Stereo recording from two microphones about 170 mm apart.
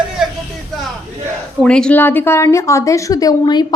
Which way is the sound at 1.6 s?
5° left (ahead or behind).